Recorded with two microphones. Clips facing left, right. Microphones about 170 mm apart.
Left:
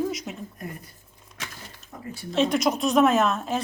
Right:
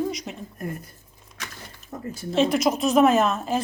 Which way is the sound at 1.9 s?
45° right (ahead or behind).